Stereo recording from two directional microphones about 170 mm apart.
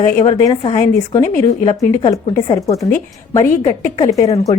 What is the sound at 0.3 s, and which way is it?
A woman's voice, 25° left (ahead or behind).